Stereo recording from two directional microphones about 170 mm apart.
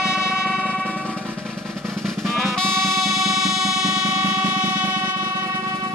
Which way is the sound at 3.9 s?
20° right (ahead or behind).